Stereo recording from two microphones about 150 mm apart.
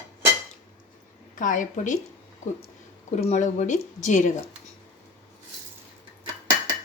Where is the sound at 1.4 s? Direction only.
60° left (ahead or behind).